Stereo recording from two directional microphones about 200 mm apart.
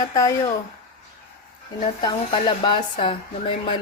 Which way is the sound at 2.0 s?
25° left (ahead or behind).